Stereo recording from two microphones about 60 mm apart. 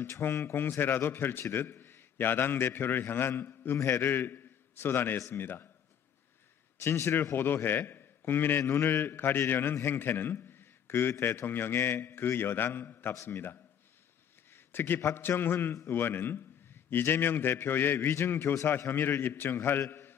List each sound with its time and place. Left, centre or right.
0.2 s a man's voice: left
6.8 s a man's voice: left
13.1 s a man's voice: left
14.5 s a sound: left
15.0 s a man's voice: left
19.9 s a sound: left